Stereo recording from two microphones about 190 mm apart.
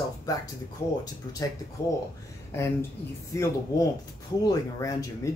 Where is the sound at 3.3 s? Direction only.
15° left (ahead or behind).